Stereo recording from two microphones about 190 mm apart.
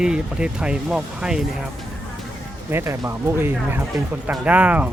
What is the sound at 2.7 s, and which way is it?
Speech, 15° right (ahead or behind).